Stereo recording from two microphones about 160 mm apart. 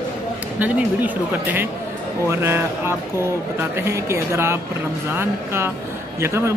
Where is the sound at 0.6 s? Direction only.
10° right (ahead or behind).